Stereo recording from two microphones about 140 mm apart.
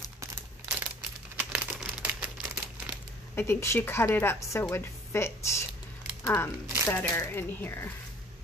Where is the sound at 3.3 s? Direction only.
20° left (ahead or behind).